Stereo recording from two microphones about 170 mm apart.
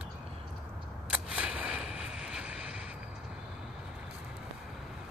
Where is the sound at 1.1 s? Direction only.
5° right (ahead or behind).